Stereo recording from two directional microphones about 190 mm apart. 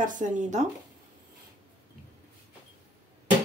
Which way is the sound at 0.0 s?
40° right (ahead or behind).